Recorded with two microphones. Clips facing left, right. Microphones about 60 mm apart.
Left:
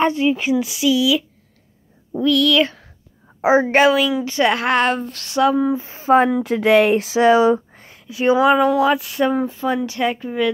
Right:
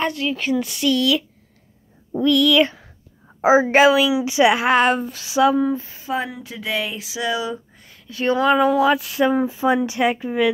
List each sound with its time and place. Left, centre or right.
0.0 s speech: left
0.5 s a woman's voice: centre
5.9 s a sound: left
6.1 s speech: left
8.1 s speech: centre
8.5 s a woman's voice: centre
9.7 s speech: centre